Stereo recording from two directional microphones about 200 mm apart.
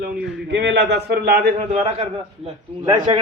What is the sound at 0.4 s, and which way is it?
A man's voice, 60° right (ahead or behind).